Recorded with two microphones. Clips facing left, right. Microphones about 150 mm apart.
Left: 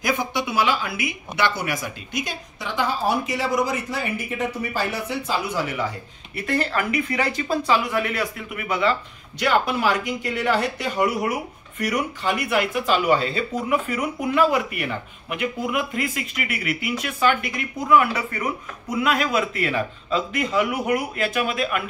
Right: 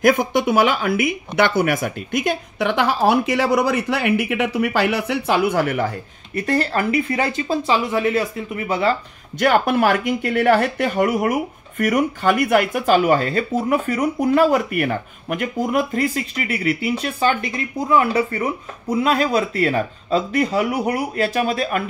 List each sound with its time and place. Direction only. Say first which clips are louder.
0.0 s speech: right 8 dB; 50° right (ahead or behind)
6.3 s speech: right 4 dB; 35° right (ahead or behind)
9.4 s speech: right 5 dB; 50° right (ahead or behind)